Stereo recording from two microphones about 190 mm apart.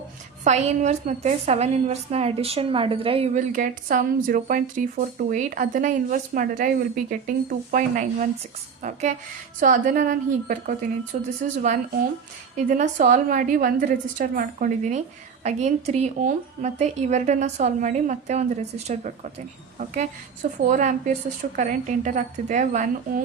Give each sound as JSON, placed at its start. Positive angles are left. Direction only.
{"t": 0.4, "sound": "a woman's voice", "side_deg": -40}